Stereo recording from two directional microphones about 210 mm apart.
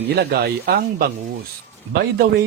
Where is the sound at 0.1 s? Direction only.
50° right (ahead or behind).